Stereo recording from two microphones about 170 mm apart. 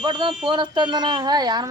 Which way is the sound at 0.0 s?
30° right (ahead or behind).